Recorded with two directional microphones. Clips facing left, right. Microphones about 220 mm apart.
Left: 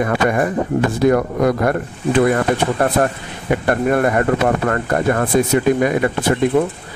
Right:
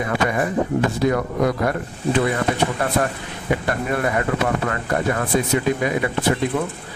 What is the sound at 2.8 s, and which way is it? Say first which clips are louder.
Speech: left 5 dB; 50° left (ahead or behind).